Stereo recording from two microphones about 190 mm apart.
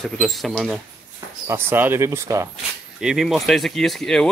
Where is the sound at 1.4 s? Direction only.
10° right (ahead or behind).